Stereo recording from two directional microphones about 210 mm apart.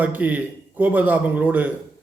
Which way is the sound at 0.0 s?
10° right (ahead or behind).